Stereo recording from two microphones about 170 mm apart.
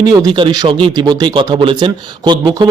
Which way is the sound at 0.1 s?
25° right (ahead or behind).